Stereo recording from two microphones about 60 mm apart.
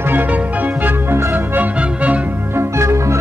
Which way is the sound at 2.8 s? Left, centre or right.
Right.